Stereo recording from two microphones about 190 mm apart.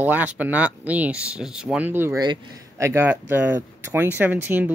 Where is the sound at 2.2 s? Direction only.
20° right (ahead or behind).